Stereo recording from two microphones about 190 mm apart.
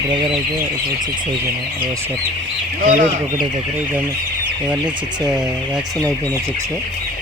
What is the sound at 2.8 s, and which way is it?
Speech, 40° right (ahead or behind).